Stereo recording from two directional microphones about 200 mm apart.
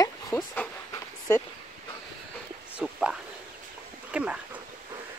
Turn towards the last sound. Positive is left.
turn(degrees=-5)  # may be behind; listen again after turning